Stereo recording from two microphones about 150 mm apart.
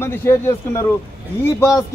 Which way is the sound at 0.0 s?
15° left (ahead or behind).